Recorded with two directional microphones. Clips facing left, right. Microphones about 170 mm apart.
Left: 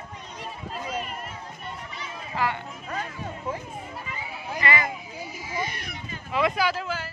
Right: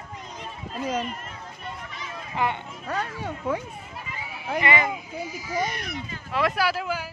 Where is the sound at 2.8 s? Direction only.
80° right.